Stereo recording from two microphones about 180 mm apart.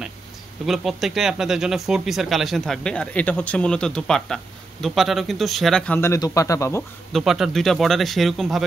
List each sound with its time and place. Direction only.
0.7 s speech: centre (ahead or behind)
5.9 s speech: 15° left (ahead or behind)
7.1 s speech: centre (ahead or behind)